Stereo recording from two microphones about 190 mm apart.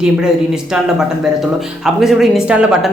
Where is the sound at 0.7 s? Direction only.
5° right (ahead or behind).